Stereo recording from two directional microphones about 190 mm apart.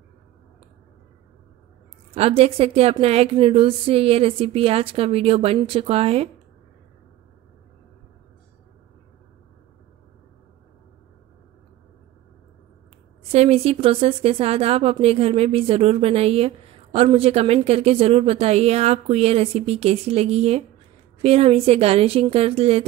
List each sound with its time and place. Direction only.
2.1 s a woman's voice: 30° right (ahead or behind)
13.3 s a woman's voice: 35° right (ahead or behind)